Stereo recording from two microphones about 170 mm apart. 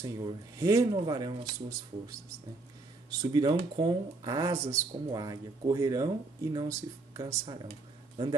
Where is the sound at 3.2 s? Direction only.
25° right (ahead or behind).